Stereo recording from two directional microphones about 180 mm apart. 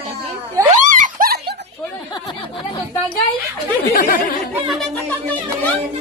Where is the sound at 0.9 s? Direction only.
50° right (ahead or behind).